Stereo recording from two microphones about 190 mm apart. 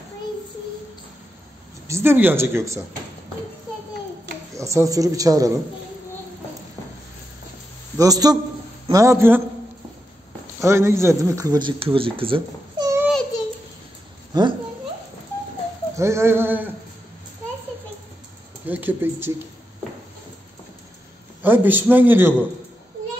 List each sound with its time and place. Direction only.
1.9 s speech: 15° right (ahead or behind)
4.6 s speech: 15° right (ahead or behind)
8.0 s a man's voice: 20° right (ahead or behind)
10.4 s speech: 15° right (ahead or behind)
12.8 s a sound: 10° right (ahead or behind)
14.3 s a man's voice: 25° right (ahead or behind)
16.0 s speech: 15° right (ahead or behind)
18.7 s speech: 10° right (ahead or behind)
21.4 s speech: 10° right (ahead or behind)